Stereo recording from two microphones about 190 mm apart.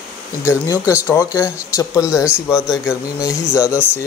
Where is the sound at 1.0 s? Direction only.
15° left (ahead or behind).